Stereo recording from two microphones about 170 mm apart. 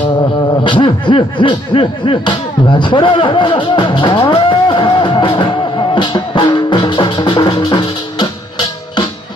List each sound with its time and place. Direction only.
0.7 s snicker: 30° left (ahead or behind)